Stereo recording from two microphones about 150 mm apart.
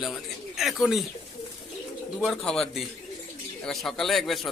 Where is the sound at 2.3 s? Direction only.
5° left (ahead or behind).